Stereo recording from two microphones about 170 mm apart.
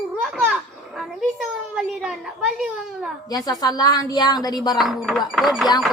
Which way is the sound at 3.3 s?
20° left (ahead or behind).